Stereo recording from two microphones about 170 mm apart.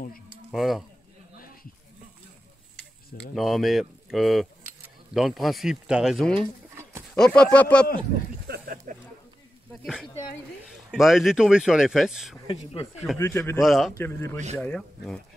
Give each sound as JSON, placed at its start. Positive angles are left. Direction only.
{"t": 0.5, "sound": "speech", "side_deg": 0}
{"t": 1.4, "sound": "a sound", "side_deg": 55}
{"t": 3.3, "sound": "speech", "side_deg": 0}
{"t": 6.7, "sound": "a sound", "side_deg": -15}
{"t": 7.2, "sound": "speech", "side_deg": 5}
{"t": 8.5, "sound": "a sound", "side_deg": -55}
{"t": 9.7, "sound": "speech", "side_deg": 0}
{"t": 13.2, "sound": "speech", "side_deg": 15}
{"t": 13.6, "sound": "speech", "side_deg": 0}
{"t": 13.9, "sound": "speech", "side_deg": 15}